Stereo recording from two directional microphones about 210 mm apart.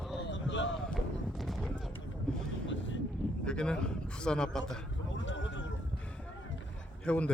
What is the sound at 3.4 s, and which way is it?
A man's voice, 5° left (ahead or behind).